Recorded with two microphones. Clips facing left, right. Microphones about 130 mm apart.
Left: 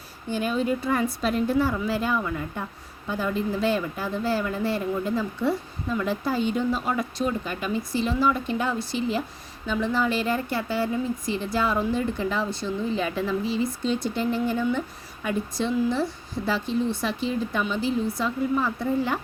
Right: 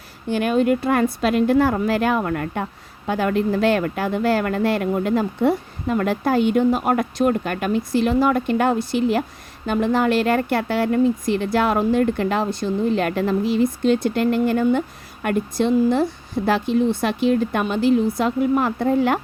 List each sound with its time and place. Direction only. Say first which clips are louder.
0.3 s speech: right 7 dB; 70° right (ahead or behind)